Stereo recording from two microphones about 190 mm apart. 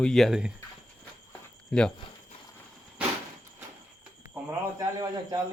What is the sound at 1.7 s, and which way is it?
Speech, 5° left (ahead or behind).